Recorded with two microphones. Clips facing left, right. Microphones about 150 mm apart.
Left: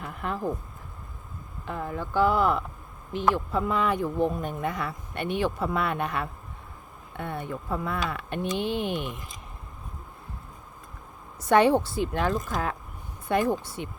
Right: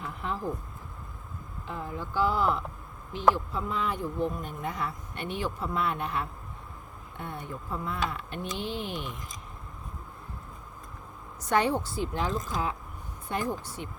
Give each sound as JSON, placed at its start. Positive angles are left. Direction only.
{"t": 0.0, "sound": "speech", "side_deg": 55}
{"t": 1.6, "sound": "speech", "side_deg": 60}
{"t": 11.4, "sound": "speech", "side_deg": 75}